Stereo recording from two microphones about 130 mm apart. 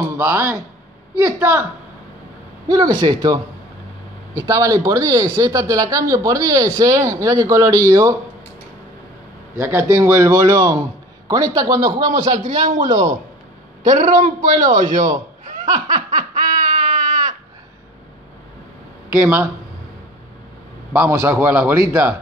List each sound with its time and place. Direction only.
0.2 s speech: 20° right (ahead or behind)
2.7 s a man's voice: 30° right (ahead or behind)
4.4 s speech: 25° right (ahead or behind)
9.6 s speech: 20° right (ahead or behind)
12.3 s a man's voice: 75° right (ahead or behind)
13.8 s a sound: 75° right (ahead or behind)
19.2 s speech: 15° right (ahead or behind)
20.9 s speech: 20° right (ahead or behind)